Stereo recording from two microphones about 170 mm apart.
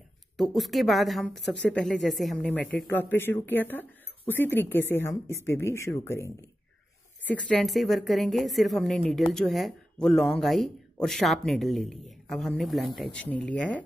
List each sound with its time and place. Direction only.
0.4 s speech: centre (ahead or behind)